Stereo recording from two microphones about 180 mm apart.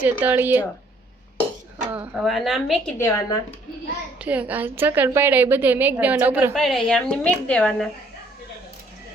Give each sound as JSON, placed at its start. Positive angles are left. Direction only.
{"t": 0.0, "sound": "a woman's voice", "side_deg": -10}
{"t": 1.9, "sound": "a woman's voice", "side_deg": -5}
{"t": 3.0, "sound": "speech", "side_deg": 15}
{"t": 4.2, "sound": "a woman's voice", "side_deg": -10}
{"t": 6.5, "sound": "a woman's voice", "side_deg": 0}